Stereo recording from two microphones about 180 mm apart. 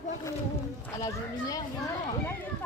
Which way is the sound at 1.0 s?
20° left (ahead or behind).